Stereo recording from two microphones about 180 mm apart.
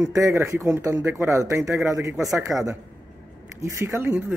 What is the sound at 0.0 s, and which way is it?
Speech, 15° right (ahead or behind).